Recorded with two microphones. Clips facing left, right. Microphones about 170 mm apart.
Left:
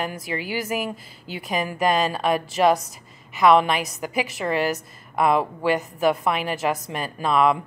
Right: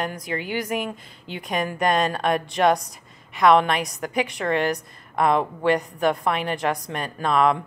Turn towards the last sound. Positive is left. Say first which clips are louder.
# even
turn(degrees=5)  # may be behind; listen again after turning